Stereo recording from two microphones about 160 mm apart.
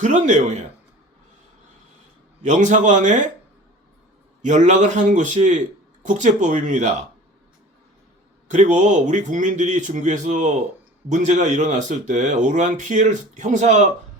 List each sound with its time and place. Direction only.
0.0 s speech: 50° right (ahead or behind)
2.4 s speech: 50° right (ahead or behind)
4.4 s speech: 50° right (ahead or behind)
8.4 s speech: 50° right (ahead or behind)